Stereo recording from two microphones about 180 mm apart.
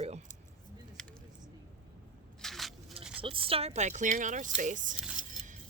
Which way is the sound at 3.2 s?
30° right (ahead or behind).